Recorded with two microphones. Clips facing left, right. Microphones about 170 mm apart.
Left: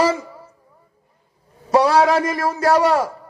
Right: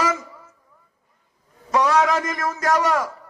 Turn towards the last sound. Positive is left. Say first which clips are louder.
# left 5 dB
turn(degrees=30)  # may be behind; listen again after turning